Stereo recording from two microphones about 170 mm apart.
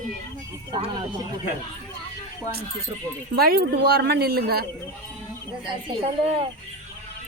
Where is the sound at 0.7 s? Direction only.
25° right (ahead or behind).